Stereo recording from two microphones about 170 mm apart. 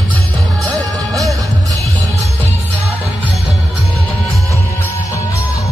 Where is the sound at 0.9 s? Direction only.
20° right (ahead or behind).